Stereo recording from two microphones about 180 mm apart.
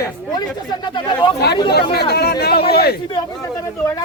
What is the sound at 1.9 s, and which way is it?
Speech, 60° left (ahead or behind).